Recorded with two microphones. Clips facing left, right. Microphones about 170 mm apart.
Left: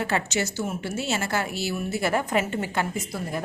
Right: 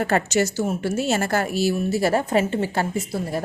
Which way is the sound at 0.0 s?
45° right (ahead or behind).